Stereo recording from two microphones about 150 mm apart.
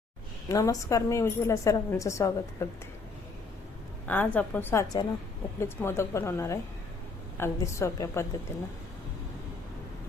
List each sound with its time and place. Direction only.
0.4 s a woman's voice: 25° left (ahead or behind)
4.0 s a woman's voice: 10° left (ahead or behind)